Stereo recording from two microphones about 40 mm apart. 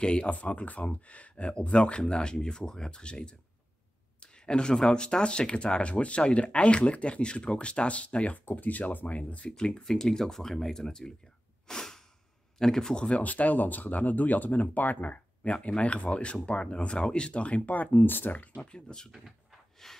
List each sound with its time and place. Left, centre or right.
0.0 s speech: left
8.5 s speech: left
9.6 s speech: centre
11.6 s sneeze: centre
12.5 s speech: centre
13.2 s speech: left
18.3 s speech: left
18.6 s speech: left
19.8 s speech: centre